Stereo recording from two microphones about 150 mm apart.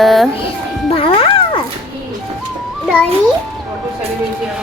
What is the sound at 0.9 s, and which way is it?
Music, 40° left (ahead or behind).